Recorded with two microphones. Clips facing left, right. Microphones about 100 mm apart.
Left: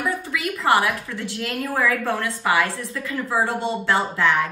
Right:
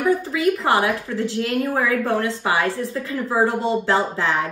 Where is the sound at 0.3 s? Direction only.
30° right (ahead or behind).